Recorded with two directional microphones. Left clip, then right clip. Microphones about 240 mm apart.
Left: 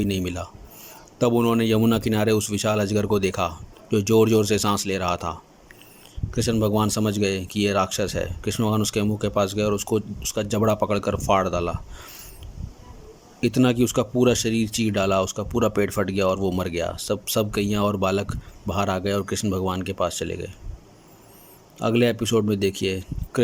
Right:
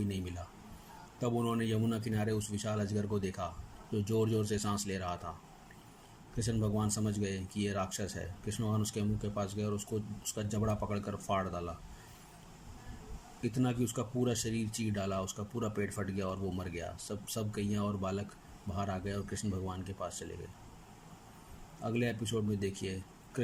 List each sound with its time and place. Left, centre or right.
0.0 s speech: left
6.3 s speech: left
13.4 s speech: left
21.8 s speech: left